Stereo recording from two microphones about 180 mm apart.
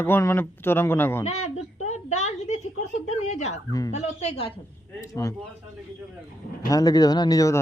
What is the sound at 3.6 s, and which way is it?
Speech, 20° left (ahead or behind).